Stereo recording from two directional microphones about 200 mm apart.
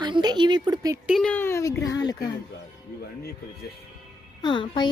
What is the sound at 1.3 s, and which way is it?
Speech, 10° left (ahead or behind).